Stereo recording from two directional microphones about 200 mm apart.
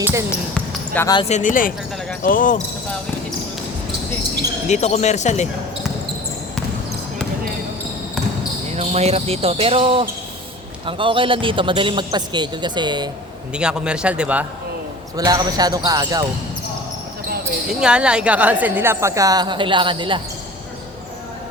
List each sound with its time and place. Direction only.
0.0 s basketball bounce: 15° right (ahead or behind)
0.3 s speech: 10° left (ahead or behind)
1.1 s speech: 30° left (ahead or behind)
4.7 s speech: 35° left (ahead or behind)
8.7 s a man's voice: 30° right (ahead or behind)
13.5 s speech: 5° right (ahead or behind)
15.1 s a man's voice: 20° right (ahead or behind)
17.7 s a woman's voice: 5° right (ahead or behind); by 20.2 s 25° right (ahead or behind)